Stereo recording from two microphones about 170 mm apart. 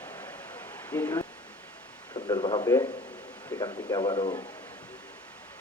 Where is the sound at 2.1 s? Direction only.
10° left (ahead or behind).